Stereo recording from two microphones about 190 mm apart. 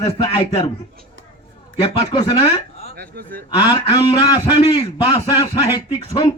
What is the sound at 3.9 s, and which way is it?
A man's voice, 25° left (ahead or behind).